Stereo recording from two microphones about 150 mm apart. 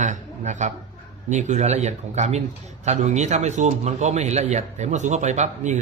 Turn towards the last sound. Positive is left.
turn(degrees=-50)  # may be behind; listen again after turning